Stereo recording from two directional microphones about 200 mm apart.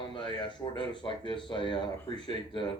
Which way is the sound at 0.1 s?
25° left (ahead or behind).